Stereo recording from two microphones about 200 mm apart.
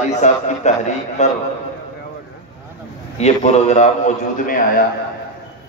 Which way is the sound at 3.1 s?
35° left (ahead or behind).